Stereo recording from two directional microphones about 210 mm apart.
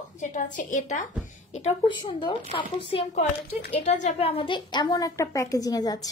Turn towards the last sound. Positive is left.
turn(degrees=15)  # may be behind; listen again after turning